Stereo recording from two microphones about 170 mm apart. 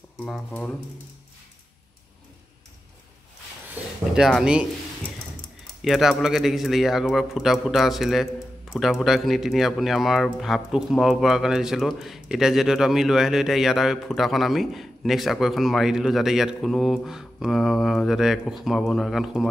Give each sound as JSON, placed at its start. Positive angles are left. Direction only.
{"t": 0.2, "sound": "speech", "side_deg": 10}
{"t": 3.7, "sound": "a sound", "side_deg": -5}
{"t": 5.9, "sound": "a man's voice", "side_deg": 0}